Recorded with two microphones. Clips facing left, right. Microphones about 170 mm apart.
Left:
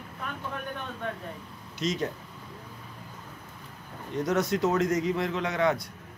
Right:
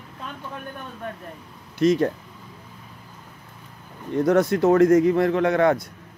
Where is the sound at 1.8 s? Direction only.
60° right (ahead or behind).